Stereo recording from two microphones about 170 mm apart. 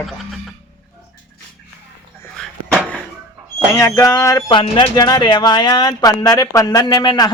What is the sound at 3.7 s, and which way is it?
Speech, 20° left (ahead or behind).